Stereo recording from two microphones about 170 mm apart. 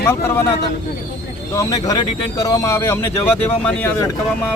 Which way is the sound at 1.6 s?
20° left (ahead or behind).